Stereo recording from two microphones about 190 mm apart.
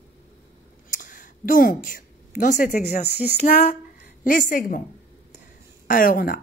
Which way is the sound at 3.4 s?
45° left (ahead or behind).